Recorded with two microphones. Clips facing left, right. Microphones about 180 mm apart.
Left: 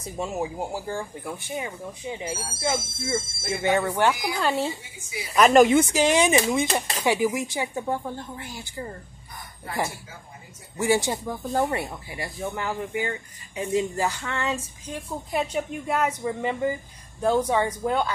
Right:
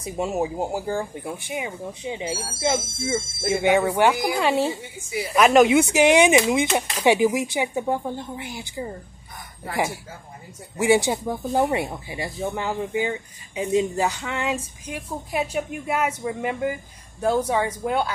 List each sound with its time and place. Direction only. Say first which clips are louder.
0.0 s speech: right 4 dB; 20° right (ahead or behind)
3.4 s a woman's voice: right 5 dB; 10° right (ahead or behind)
10.8 s a woman's voice: right 4 dB; 15° right (ahead or behind)